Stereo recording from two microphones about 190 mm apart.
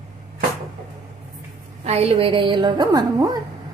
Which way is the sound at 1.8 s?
35° right (ahead or behind).